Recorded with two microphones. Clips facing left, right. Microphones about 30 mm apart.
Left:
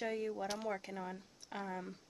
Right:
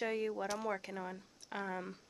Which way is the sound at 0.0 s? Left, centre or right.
Right.